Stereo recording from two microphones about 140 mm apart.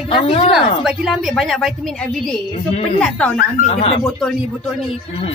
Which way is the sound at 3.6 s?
45° left (ahead or behind).